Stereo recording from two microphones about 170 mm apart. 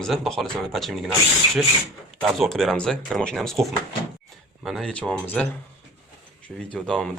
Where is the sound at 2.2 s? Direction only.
Centre (ahead or behind).